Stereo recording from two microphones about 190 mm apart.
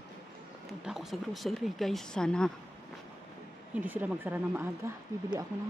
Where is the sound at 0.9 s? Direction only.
Centre (ahead or behind).